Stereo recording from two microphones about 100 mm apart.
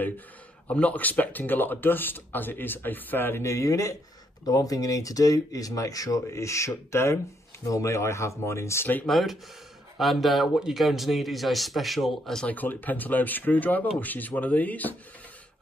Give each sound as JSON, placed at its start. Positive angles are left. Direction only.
{"t": 0.7, "sound": "speech", "side_deg": 15}
{"t": 9.0, "sound": "speech", "side_deg": 0}
{"t": 12.4, "sound": "speech", "side_deg": 15}